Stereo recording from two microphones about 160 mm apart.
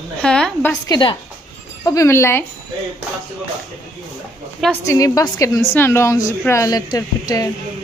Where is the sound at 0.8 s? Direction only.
25° left (ahead or behind).